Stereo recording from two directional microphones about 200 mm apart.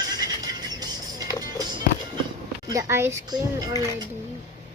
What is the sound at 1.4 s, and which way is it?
Music, 20° right (ahead or behind).